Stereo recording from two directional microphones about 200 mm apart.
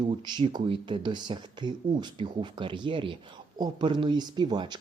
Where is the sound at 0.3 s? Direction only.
20° right (ahead or behind).